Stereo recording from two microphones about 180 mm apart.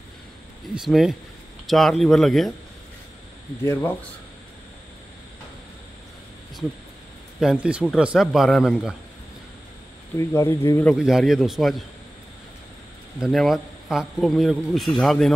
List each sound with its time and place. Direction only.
0.7 s speech: centre (ahead or behind)
3.6 s speech: 15° left (ahead or behind)
7.3 s speech: 5° right (ahead or behind)
10.1 s speech: 15° left (ahead or behind)
11.0 s speech: 5° right (ahead or behind)
13.2 s speech: centre (ahead or behind)